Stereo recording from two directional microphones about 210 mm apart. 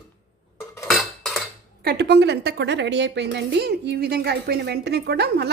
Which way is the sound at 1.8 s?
50° right (ahead or behind).